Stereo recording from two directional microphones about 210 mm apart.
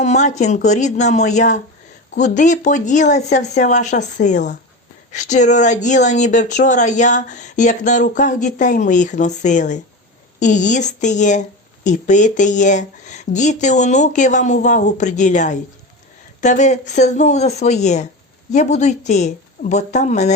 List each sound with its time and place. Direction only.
0.0 s speech: 35° left (ahead or behind)